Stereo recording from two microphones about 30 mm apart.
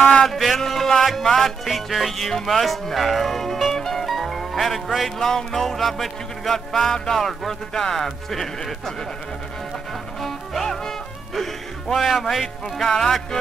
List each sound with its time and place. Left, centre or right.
0.2 s a sound: centre
0.6 s music: centre
1.7 s speech: centre
3.7 s music: centre
4.1 s music: centre
10.2 s music: centre
11.9 s speech: centre
12.9 s music: centre